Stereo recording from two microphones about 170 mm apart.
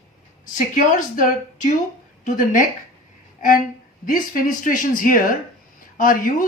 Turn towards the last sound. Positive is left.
turn(degrees=55)  # may be behind; listen again after turning